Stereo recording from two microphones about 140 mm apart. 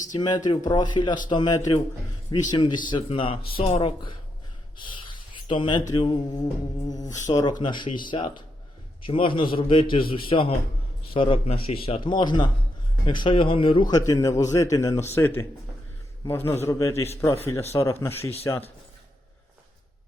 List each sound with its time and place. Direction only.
0.1 s a man's voice: 30° left (ahead or behind)
4.8 s a sound: 35° left (ahead or behind)
5.9 s a man's voice: 30° left (ahead or behind)